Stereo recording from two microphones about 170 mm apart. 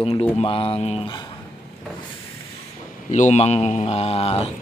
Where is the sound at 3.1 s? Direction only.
45° left (ahead or behind).